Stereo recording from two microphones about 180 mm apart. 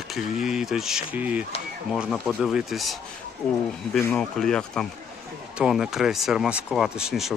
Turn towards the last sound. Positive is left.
turn(degrees=0)  # may be behind; listen again after turning